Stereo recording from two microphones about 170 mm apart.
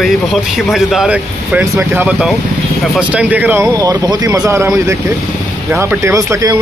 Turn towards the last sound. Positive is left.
turn(degrees=-20)  # may be behind; listen again after turning